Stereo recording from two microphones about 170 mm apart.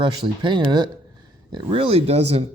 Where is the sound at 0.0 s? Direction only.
30° right (ahead or behind).